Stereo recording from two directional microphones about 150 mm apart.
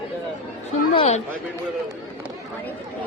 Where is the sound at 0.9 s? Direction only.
45° left (ahead or behind).